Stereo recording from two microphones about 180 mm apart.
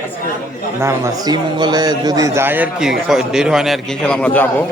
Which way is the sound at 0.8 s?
15° right (ahead or behind).